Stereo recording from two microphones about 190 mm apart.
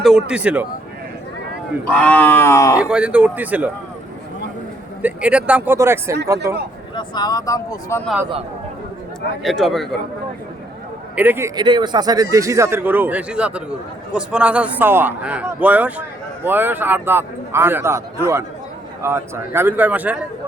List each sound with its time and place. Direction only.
0.0 s a man's voice: 5° right (ahead or behind)
1.9 s wild animals: 5° left (ahead or behind)
2.7 s a man's voice: 5° right (ahead or behind)
5.0 s a man's voice: 5° right (ahead or behind)
6.9 s speech: 20° left (ahead or behind)
8.0 s a man's voice: 5° right (ahead or behind)
9.4 s speech: centre (ahead or behind)
11.1 s a man's voice: 10° right (ahead or behind)